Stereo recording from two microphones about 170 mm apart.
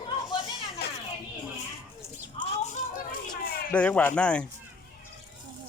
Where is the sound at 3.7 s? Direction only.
5° left (ahead or behind).